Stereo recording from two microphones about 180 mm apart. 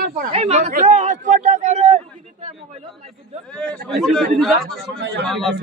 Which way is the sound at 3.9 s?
Centre (ahead or behind).